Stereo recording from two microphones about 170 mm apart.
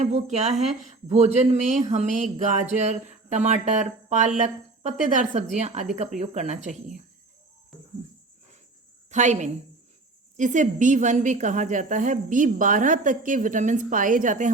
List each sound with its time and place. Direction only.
0.0 s a woman's voice: 40° right (ahead or behind)
7.7 s cricket: centre (ahead or behind)
9.0 s a woman's voice: 45° right (ahead or behind)